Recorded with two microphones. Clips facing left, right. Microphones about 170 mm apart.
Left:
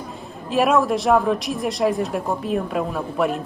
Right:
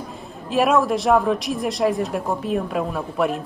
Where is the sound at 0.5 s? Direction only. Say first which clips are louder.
Even; centre (ahead or behind).